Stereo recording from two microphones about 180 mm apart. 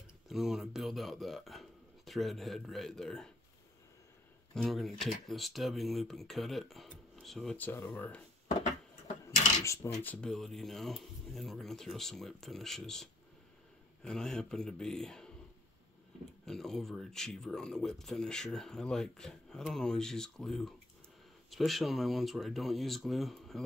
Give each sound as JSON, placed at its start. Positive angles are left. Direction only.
{"t": 0.3, "sound": "a man's voice", "side_deg": 0}
{"t": 4.6, "sound": "speech", "side_deg": 0}
{"t": 9.7, "sound": "speech", "side_deg": 15}
{"t": 10.1, "sound": "speech", "side_deg": 5}
{"t": 16.4, "sound": "speech", "side_deg": 0}